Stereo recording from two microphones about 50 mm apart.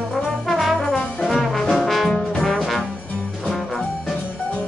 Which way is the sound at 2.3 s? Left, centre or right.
Centre.